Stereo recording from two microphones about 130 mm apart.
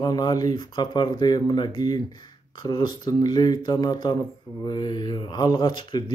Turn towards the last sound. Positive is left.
turn(degrees=35)  # may be behind; listen again after turning